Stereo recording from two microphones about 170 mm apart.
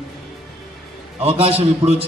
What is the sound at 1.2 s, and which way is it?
Speech, 35° right (ahead or behind).